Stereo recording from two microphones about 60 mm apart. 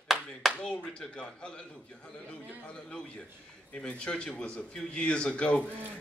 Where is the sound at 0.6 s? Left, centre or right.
Centre.